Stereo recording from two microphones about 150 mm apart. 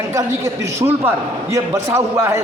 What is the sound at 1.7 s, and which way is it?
Speech, 20° right (ahead or behind).